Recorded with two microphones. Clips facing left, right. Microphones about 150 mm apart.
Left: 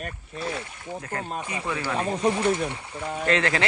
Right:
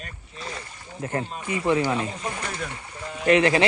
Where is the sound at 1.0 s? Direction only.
25° right (ahead or behind).